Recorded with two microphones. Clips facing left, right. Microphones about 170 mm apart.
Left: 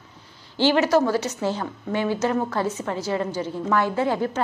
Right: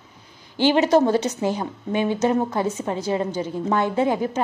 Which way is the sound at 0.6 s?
20° right (ahead or behind).